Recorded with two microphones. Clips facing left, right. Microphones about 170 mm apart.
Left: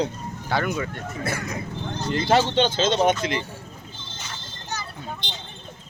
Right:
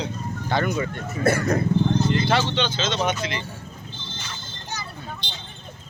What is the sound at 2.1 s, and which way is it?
Speech, 35° left (ahead or behind).